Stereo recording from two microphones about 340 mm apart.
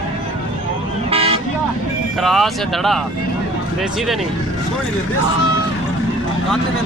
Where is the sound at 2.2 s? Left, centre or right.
Centre.